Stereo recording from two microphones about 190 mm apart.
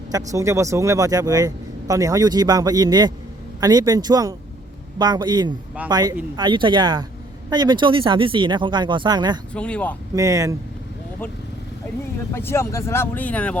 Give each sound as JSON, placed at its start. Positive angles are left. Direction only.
{"t": 0.1, "sound": "speech", "side_deg": -15}
{"t": 9.6, "sound": "speech", "side_deg": 5}
{"t": 10.2, "sound": "speech", "side_deg": -15}
{"t": 12.3, "sound": "speech", "side_deg": 10}